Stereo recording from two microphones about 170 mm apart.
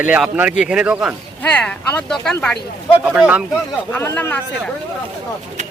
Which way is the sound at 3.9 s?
15° left (ahead or behind).